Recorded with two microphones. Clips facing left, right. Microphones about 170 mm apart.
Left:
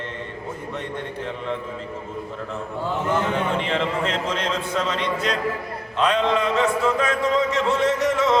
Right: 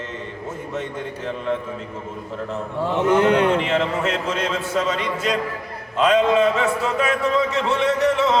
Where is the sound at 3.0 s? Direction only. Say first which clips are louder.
Right 8 dB; 80° right.